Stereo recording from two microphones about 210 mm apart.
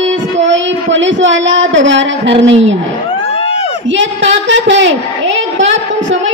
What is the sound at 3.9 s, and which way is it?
A woman's voice, 60° right (ahead or behind).